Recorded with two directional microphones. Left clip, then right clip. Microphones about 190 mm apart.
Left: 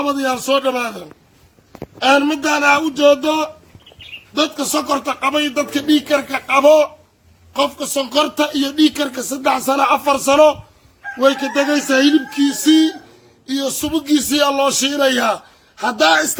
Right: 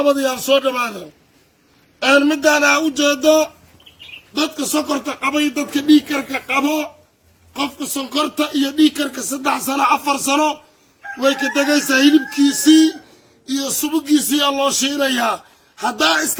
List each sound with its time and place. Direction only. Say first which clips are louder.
0.0 s speech: right 2 dB; 25° left (ahead or behind)
2.0 s speech: even; 20° left (ahead or behind)
4.6 s speech: left 2 dB; 40° left (ahead or behind)